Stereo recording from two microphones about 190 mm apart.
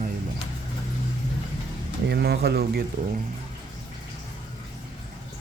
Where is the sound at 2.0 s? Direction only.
60° right (ahead or behind).